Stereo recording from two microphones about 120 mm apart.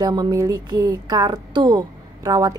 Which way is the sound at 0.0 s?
35° right (ahead or behind).